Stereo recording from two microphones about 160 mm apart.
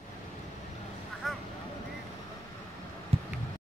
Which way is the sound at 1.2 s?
Centre (ahead or behind).